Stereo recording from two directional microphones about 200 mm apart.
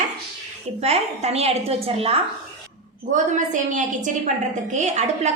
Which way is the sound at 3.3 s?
40° right (ahead or behind).